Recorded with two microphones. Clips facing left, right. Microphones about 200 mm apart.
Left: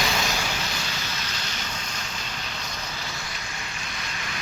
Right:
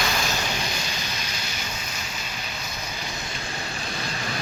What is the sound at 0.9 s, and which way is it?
Vehicle, 15° right (ahead or behind).